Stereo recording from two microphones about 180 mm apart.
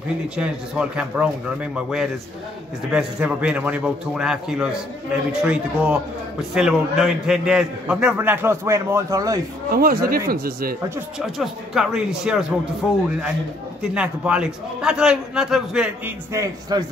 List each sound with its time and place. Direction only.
0.4 s a man's voice: 5° right (ahead or behind)
9.7 s speech: 55° right (ahead or behind)
11.1 s a man's voice: centre (ahead or behind)
13.9 s a man's voice: 5° right (ahead or behind)
16.3 s a man's voice: 20° right (ahead or behind)